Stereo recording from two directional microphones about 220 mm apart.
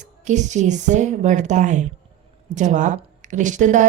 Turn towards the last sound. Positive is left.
turn(degrees=-35)  # may be behind; listen again after turning